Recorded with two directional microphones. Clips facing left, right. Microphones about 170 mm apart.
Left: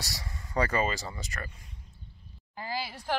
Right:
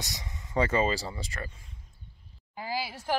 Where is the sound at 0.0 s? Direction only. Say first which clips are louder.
Even; 20° right (ahead or behind).